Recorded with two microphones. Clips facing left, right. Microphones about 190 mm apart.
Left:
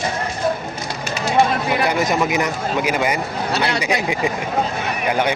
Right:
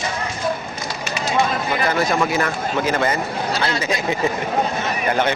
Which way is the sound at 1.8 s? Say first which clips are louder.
Right 2 dB; 15° left (ahead or behind).